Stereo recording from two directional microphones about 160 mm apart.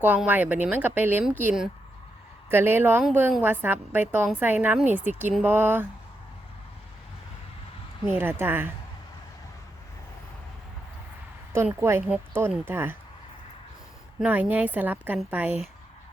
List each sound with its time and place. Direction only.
0.0 s a woman's voice: 10° right (ahead or behind)
8.0 s a woman's voice: 10° right (ahead or behind)
11.5 s a woman's voice: 15° right (ahead or behind)
14.2 s a woman's voice: 10° right (ahead or behind)